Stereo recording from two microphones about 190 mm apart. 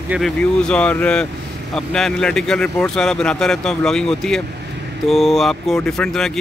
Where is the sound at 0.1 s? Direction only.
5° left (ahead or behind).